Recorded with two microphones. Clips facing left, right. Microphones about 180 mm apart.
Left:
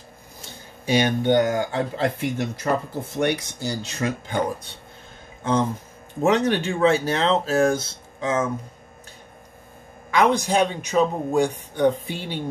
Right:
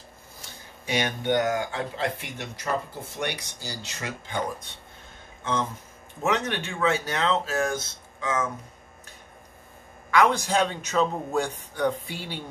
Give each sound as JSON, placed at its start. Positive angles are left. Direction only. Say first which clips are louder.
{"t": 0.8, "sound": "speech", "louder": "left 7 dB", "side_deg": 30}
{"t": 5.4, "sound": "speech", "louder": "left 6 dB", "side_deg": 35}
{"t": 10.1, "sound": "a man's voice", "louder": "left 3 dB", "side_deg": 20}